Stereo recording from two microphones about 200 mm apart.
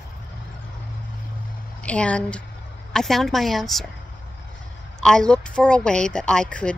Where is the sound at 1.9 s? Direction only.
5° left (ahead or behind).